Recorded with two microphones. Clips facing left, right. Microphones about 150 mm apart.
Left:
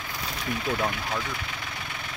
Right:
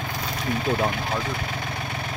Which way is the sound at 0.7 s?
30° right (ahead or behind).